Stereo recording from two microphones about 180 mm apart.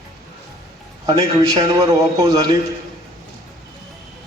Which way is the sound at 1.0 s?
25° right (ahead or behind).